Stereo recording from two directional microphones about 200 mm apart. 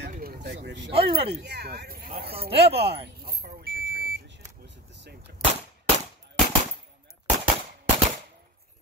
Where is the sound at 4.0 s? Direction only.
45° right (ahead or behind).